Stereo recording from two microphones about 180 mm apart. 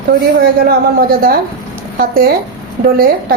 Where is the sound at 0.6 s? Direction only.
55° right (ahead or behind).